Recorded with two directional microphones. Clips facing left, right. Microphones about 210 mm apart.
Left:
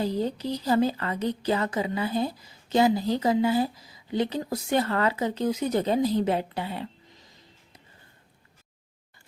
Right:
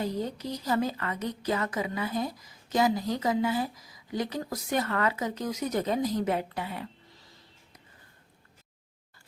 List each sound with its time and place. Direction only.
0.0 s speech: 30° left (ahead or behind)